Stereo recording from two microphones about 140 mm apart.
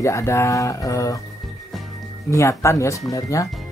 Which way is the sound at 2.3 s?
20° left (ahead or behind).